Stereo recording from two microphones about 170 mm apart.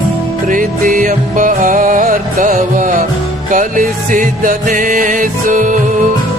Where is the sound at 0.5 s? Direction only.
50° right (ahead or behind).